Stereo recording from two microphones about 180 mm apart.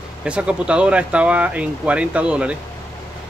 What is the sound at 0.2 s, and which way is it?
Speech, 5° right (ahead or behind).